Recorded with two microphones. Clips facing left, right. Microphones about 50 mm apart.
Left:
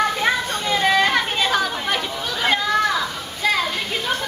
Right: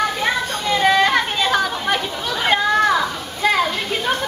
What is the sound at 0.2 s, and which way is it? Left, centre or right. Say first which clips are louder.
Children playing: even; centre.